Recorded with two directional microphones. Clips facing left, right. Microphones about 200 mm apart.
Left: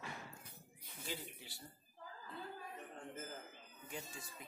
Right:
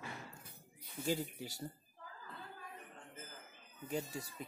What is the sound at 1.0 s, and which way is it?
Speech, 45° right (ahead or behind).